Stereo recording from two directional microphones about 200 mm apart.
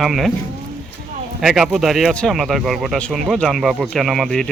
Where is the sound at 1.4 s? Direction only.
Centre (ahead or behind).